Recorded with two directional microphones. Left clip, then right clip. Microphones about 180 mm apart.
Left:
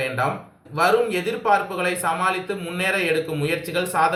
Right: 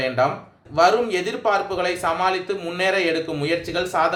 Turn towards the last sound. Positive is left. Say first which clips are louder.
# even
turn(degrees=-45)  # may be behind; listen again after turning